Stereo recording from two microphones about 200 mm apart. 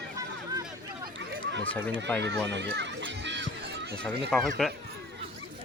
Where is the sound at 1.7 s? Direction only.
5° left (ahead or behind).